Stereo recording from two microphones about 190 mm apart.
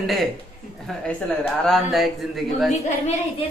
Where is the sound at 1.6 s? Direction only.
Centre (ahead or behind).